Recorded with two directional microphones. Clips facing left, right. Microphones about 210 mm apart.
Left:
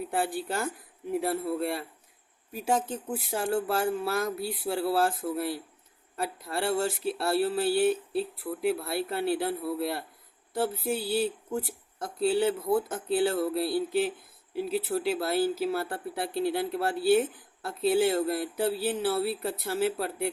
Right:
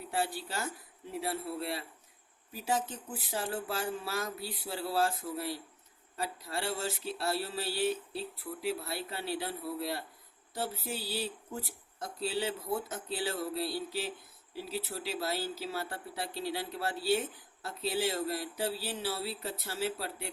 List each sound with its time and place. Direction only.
0.1 s speech: 50° left (ahead or behind)